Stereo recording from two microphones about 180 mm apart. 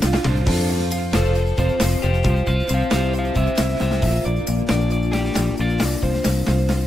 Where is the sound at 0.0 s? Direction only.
Centre (ahead or behind).